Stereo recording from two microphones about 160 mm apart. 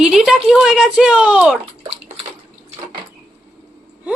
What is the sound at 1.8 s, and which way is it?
Bathtub, 35° right (ahead or behind).